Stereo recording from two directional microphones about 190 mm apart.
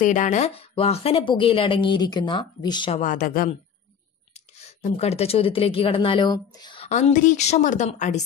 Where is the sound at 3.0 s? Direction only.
45° left (ahead or behind).